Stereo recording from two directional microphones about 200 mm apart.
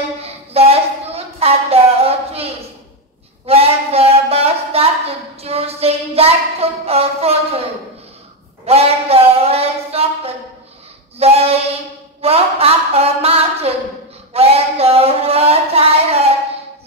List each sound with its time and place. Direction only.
0.2 s a sound: 30° right (ahead or behind)
3.4 s a woman's voice: 30° right (ahead or behind)
8.6 s speech: 30° right (ahead or behind)